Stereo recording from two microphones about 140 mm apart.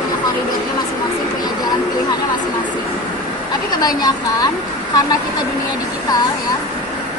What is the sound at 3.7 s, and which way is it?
Speech, 30° left (ahead or behind).